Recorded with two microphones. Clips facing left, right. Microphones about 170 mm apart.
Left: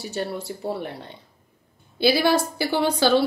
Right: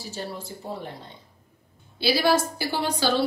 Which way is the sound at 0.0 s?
70° left (ahead or behind).